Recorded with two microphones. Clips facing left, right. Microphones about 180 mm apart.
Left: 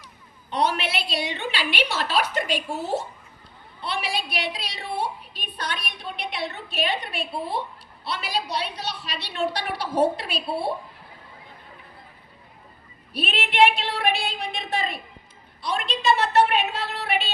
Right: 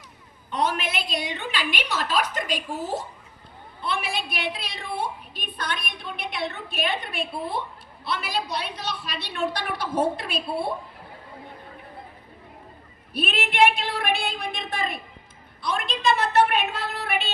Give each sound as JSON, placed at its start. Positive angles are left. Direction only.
{"t": 0.5, "sound": "a woman's voice", "side_deg": -45}
{"t": 13.1, "sound": "a woman's voice", "side_deg": -45}